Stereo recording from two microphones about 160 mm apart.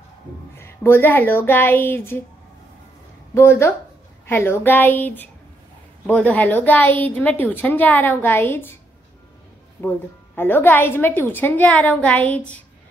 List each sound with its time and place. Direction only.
0.6 s a woman's voice: 15° left (ahead or behind)
3.3 s a woman's voice: 15° left (ahead or behind)
9.8 s a woman's voice: 15° left (ahead or behind)